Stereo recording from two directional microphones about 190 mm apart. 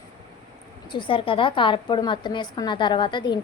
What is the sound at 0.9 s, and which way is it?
A woman's voice, 25° left (ahead or behind).